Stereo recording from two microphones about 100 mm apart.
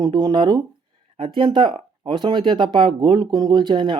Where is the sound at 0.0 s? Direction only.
45° right (ahead or behind).